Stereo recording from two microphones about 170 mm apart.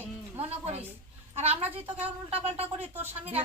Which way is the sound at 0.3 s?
35° right (ahead or behind).